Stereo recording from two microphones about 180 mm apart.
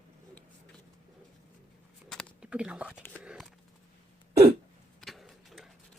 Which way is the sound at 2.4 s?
5° right (ahead or behind).